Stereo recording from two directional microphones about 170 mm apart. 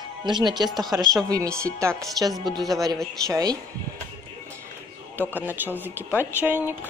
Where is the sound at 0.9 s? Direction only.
15° right (ahead or behind).